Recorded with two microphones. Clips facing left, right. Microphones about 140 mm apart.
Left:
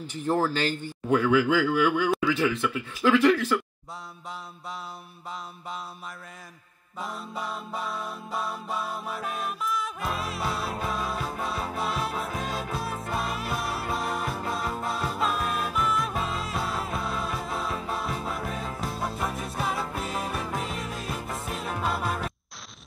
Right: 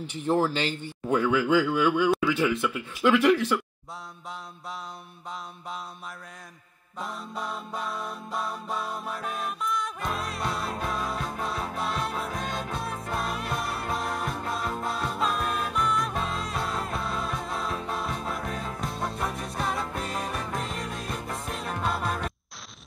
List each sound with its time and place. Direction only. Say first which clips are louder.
0.0 s speech: even; 40° left (ahead or behind)
0.4 s speech: even; 25° right (ahead or behind)
2.6 s speech: even; centre (ahead or behind)
7.0 s music: even; 5° left (ahead or behind)